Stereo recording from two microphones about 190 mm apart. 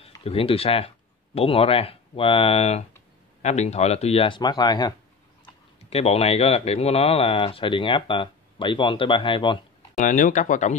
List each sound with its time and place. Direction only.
0.2 s speech: 30° left (ahead or behind)
5.4 s speech: 30° left (ahead or behind)
9.9 s speech: 45° left (ahead or behind)